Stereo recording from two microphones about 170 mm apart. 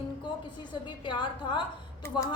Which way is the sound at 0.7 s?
30° left (ahead or behind).